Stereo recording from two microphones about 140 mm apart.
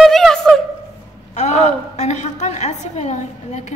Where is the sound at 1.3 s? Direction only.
55° left (ahead or behind).